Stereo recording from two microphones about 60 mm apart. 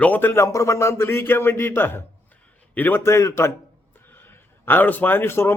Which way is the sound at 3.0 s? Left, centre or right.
Left.